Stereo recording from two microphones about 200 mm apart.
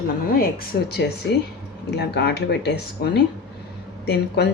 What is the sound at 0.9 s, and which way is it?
A woman's voice, 55° left (ahead or behind).